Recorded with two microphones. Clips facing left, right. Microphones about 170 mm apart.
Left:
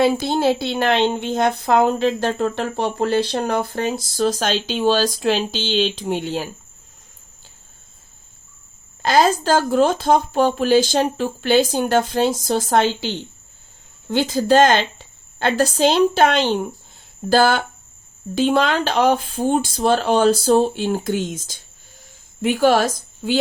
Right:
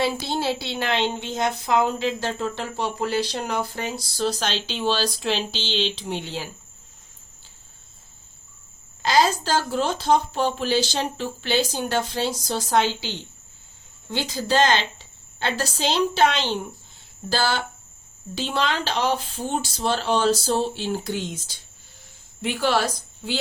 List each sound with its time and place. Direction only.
0.0 s a woman's voice: 50° left (ahead or behind)
9.0 s a woman's voice: 55° left (ahead or behind)